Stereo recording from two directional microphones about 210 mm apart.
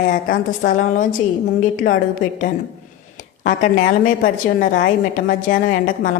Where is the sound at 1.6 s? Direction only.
40° left (ahead or behind).